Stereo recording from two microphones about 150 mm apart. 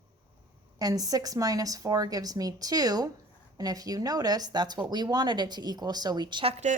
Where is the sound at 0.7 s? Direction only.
25° right (ahead or behind).